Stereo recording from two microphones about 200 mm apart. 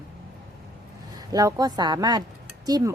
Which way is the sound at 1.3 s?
20° right (ahead or behind).